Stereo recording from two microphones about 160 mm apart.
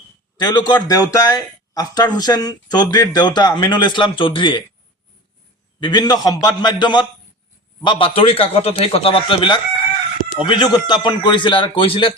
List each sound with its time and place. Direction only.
0.3 s speech: 25° left (ahead or behind)
5.8 s a man's voice: 25° left (ahead or behind)